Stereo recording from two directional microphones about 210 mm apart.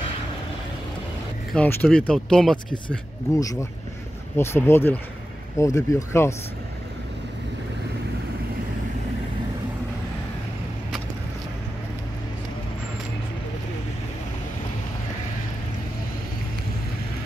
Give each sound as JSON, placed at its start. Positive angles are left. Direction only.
{"t": 1.5, "sound": "speech", "side_deg": 5}
{"t": 4.4, "sound": "speech", "side_deg": 10}